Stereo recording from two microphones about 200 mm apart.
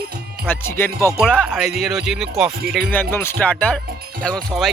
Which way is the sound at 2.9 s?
10° left (ahead or behind).